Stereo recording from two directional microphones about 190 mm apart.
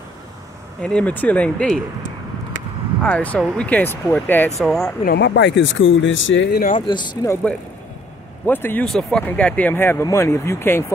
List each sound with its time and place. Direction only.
0.8 s speech: 5° left (ahead or behind)
3.0 s speech: 5° left (ahead or behind)
5.0 s speech: 60° left (ahead or behind)
6.9 s speech: 25° left (ahead or behind)
8.5 s speech: 10° left (ahead or behind)